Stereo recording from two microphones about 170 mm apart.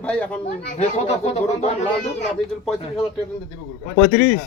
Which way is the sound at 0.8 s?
40° left (ahead or behind).